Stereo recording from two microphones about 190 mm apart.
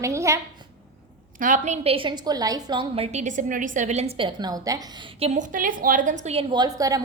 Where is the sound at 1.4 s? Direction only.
40° right (ahead or behind); by 4.8 s 20° right (ahead or behind).